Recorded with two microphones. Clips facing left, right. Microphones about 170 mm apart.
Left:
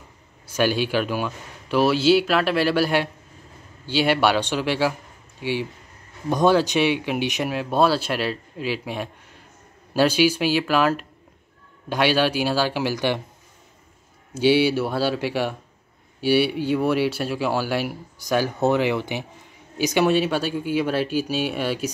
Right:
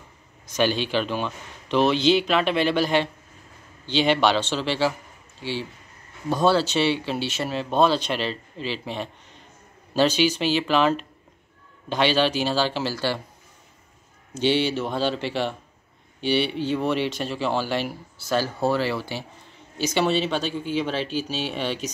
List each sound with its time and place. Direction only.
0.5 s speech: 10° left (ahead or behind)
14.3 s speech: 10° left (ahead or behind)